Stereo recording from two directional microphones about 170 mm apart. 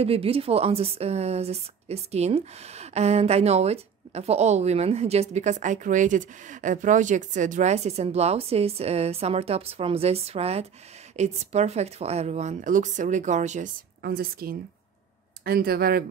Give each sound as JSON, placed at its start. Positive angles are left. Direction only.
{"t": 0.0, "sound": "a woman's voice", "side_deg": -35}
{"t": 14.0, "sound": "speech", "side_deg": -65}